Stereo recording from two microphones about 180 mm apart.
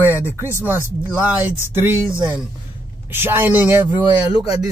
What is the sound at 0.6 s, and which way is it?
Speech, 10° right (ahead or behind).